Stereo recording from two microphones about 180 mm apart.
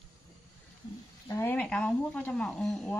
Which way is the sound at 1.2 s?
15° left (ahead or behind).